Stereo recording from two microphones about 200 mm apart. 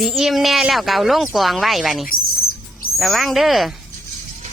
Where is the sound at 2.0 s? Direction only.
45° left (ahead or behind).